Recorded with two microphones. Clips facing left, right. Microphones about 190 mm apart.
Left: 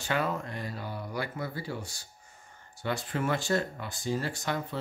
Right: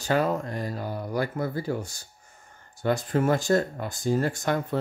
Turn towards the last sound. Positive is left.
turn(degrees=-50)  # may be behind; listen again after turning